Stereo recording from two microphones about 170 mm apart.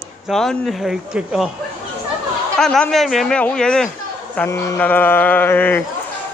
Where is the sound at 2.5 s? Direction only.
5° left (ahead or behind).